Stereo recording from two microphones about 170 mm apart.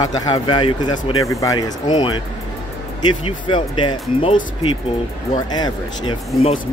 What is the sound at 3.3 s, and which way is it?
Speech, 30° left (ahead or behind).